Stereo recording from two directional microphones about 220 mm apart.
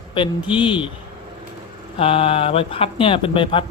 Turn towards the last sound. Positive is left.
turn(degrees=25)  # may be behind; listen again after turning